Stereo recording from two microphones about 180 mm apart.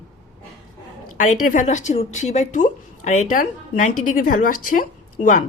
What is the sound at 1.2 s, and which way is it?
A woman's voice, 50° left (ahead or behind).